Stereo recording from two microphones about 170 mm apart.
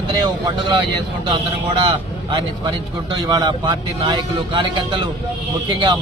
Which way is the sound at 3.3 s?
25° right (ahead or behind).